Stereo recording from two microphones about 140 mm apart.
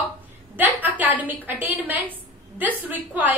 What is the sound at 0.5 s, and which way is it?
A woman's voice, 15° right (ahead or behind).